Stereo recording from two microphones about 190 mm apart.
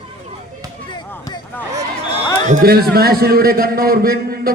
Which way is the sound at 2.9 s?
55° right (ahead or behind).